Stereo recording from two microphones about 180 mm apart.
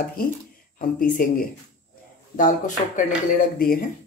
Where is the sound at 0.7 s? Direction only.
50° left (ahead or behind).